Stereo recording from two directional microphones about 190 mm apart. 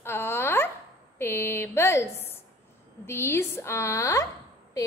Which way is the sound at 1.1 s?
10° left (ahead or behind).